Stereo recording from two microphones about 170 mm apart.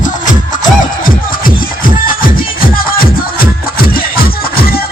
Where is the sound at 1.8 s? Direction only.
55° left (ahead or behind).